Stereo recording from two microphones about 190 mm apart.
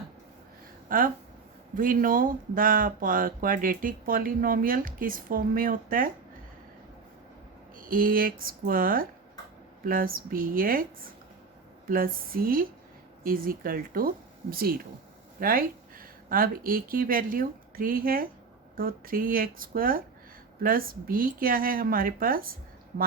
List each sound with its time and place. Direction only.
0.9 s speech: 50° right (ahead or behind)
7.9 s speech: 50° right (ahead or behind)
11.9 s speech: 50° right (ahead or behind)